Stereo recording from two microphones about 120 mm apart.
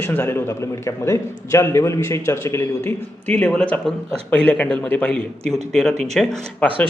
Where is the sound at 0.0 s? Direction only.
20° left (ahead or behind).